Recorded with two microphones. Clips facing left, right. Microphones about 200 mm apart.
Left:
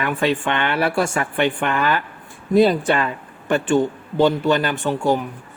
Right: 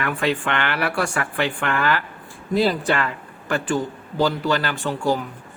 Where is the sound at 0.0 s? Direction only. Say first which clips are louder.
Left 3 dB; 25° left (ahead or behind).